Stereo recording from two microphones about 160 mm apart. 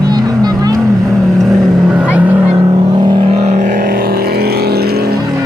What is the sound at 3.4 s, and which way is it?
Vehicle, 55° right (ahead or behind).